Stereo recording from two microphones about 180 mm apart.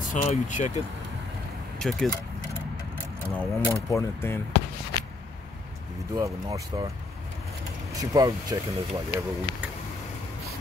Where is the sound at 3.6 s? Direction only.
15° left (ahead or behind).